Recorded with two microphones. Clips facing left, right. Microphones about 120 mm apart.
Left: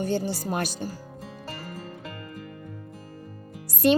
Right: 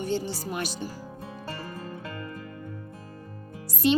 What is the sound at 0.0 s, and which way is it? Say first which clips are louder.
Speech: left 2 dB; 45° left (ahead or behind).